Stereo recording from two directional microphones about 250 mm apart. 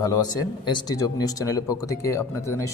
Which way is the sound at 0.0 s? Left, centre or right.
Centre.